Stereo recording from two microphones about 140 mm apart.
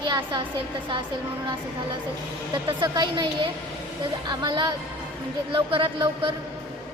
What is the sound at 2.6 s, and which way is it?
A woman's voice, 30° right (ahead or behind).